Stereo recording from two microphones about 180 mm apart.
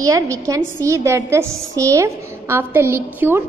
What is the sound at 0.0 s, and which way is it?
A woman's voice, 20° right (ahead or behind).